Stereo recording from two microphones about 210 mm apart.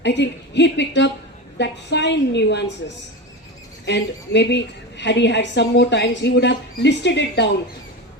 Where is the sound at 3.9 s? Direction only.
55° left (ahead or behind).